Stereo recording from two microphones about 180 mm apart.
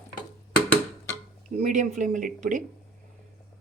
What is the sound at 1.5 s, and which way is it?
Speech, 45° right (ahead or behind).